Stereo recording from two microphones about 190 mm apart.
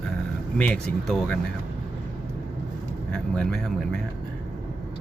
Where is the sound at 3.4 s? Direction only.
5° left (ahead or behind).